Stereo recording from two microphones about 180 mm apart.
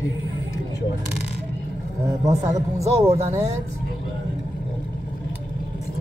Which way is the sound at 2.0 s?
20° right (ahead or behind).